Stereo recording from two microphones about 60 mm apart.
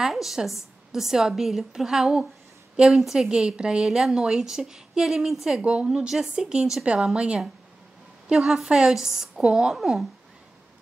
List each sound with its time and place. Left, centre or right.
0.0 s a woman's voice: centre
3.3 s a woman's voice: centre
5.6 s a woman's voice: right
5.9 s a woman's voice: centre
9.8 s speech: centre